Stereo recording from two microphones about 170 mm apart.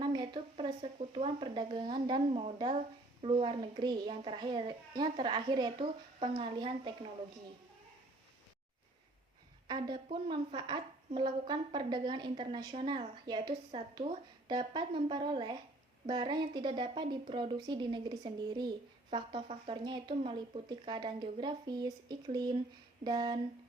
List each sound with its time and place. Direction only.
0.0 s a sound: 25° right (ahead or behind)
0.5 s speech: 35° right (ahead or behind)
9.6 s speech: 25° right (ahead or behind)